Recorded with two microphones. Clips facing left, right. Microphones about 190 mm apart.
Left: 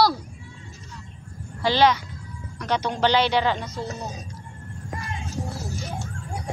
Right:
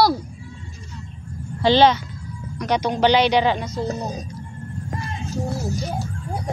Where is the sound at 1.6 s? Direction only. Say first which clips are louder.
Right 4 dB; 25° right (ahead or behind).